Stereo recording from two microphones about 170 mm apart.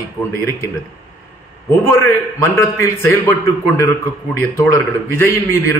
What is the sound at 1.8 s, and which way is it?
A man's voice, 15° left (ahead or behind).